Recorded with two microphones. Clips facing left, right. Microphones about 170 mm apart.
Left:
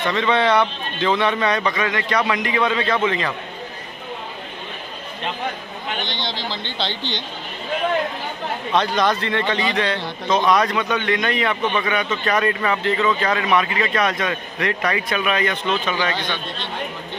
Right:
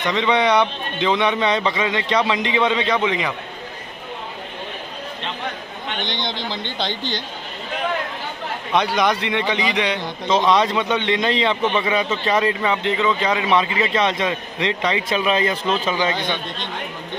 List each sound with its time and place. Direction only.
0.1 s a man's voice: 15° right (ahead or behind)
6.0 s a man's voice: 20° right (ahead or behind)
8.7 s a man's voice: 15° right (ahead or behind)